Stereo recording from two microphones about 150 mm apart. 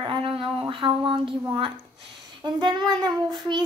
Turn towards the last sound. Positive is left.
turn(degrees=-30)  # may be behind; listen again after turning